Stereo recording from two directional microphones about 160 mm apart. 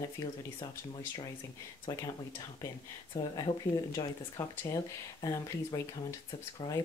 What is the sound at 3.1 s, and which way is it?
Speech, 30° left (ahead or behind).